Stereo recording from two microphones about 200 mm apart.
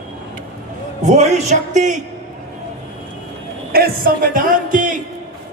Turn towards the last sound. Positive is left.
turn(degrees=-40)  # may be behind; listen again after turning